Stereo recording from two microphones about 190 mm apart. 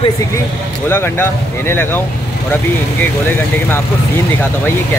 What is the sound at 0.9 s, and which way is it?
Speech, 10° left (ahead or behind).